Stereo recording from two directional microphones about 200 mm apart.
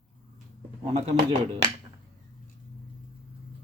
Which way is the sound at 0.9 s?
35° right (ahead or behind).